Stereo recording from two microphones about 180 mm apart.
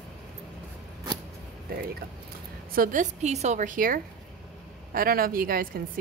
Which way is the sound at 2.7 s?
50° right (ahead or behind).